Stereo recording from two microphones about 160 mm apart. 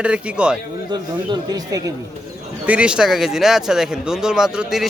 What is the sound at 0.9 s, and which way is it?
Speech, 25° right (ahead or behind).